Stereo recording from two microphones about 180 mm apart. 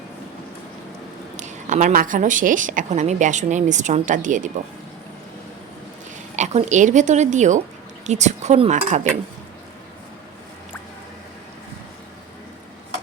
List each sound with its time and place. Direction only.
1.4 s a woman's voice: 40° right (ahead or behind)
6.3 s a woman's voice: 40° right (ahead or behind)